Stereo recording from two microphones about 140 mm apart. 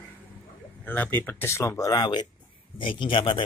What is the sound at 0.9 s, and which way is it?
Speech, 15° left (ahead or behind).